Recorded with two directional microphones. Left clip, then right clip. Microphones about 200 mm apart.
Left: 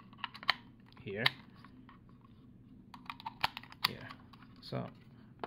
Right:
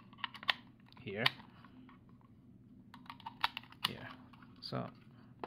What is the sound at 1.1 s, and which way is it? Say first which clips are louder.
Speech: left 1 dB; 10° right (ahead or behind).